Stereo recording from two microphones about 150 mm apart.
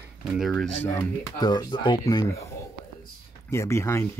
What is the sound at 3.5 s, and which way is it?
Speech, 20° left (ahead or behind).